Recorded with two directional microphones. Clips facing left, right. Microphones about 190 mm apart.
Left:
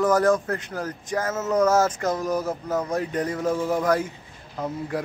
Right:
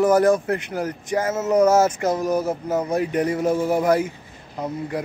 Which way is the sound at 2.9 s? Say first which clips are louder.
Right 4 dB; 10° right (ahead or behind).